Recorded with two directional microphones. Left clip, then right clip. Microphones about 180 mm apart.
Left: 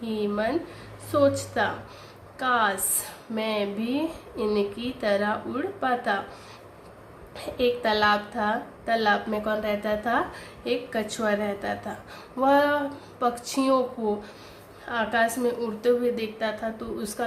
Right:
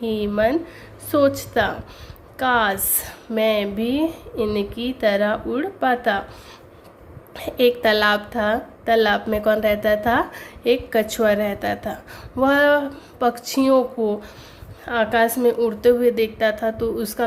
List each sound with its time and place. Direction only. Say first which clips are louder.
0.0 s a woman's voice: right 7 dB; 40° right (ahead or behind)
7.3 s a woman's voice: right 7 dB; 45° right (ahead or behind)
14.8 s a woman's voice: right 6 dB; 40° right (ahead or behind)